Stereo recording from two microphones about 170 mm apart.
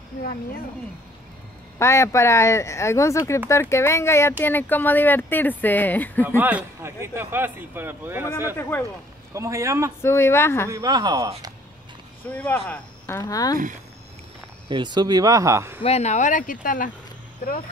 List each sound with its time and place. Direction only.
1.8 s speech: 15° left (ahead or behind)
6.2 s a man's voice: 10° right (ahead or behind)
8.5 s speech: 10° left (ahead or behind)
9.3 s a man's voice: 20° right (ahead or behind)
10.0 s speech: 15° left (ahead or behind)
10.7 s speech: 20° right (ahead or behind)
12.3 s speech: 10° left (ahead or behind)
14.7 s speech: 25° right (ahead or behind)
15.8 s speech: 40° left (ahead or behind)